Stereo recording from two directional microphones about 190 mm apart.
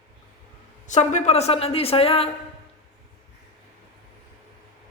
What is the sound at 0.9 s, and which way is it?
Speech, 40° left (ahead or behind).